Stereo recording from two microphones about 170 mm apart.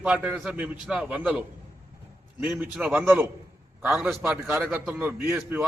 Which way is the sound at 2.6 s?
10° right (ahead or behind).